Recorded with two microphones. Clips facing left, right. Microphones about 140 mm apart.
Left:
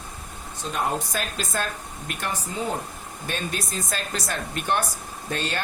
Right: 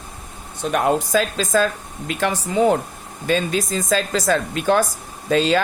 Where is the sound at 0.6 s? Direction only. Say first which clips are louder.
Right 8 dB; 80° right.